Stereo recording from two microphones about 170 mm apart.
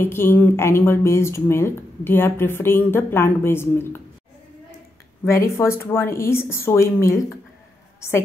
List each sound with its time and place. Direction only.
0.0 s a woman's voice: 15° left (ahead or behind)
5.2 s a woman's voice: 15° left (ahead or behind)